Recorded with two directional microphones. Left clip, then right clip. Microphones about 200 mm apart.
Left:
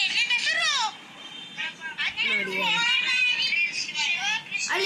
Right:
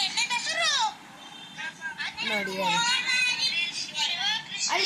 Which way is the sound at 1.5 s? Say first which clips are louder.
Left 3 dB; centre (ahead or behind).